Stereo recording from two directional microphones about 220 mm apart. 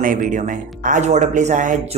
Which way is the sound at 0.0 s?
35° right (ahead or behind).